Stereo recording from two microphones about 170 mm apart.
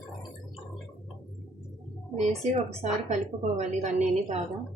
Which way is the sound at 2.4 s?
40° right (ahead or behind).